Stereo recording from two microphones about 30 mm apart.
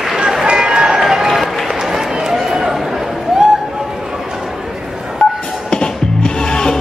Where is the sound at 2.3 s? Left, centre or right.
Centre.